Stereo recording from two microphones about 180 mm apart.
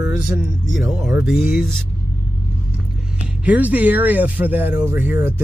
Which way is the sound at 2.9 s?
5° right (ahead or behind).